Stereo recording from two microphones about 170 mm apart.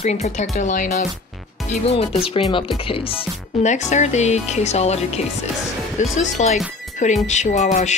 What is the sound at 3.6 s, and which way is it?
Speech, 45° left (ahead or behind).